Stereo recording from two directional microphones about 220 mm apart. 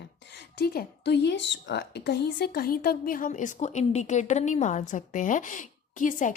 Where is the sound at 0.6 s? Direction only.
45° left (ahead or behind).